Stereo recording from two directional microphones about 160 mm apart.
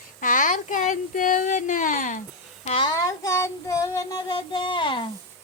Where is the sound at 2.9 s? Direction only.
20° left (ahead or behind).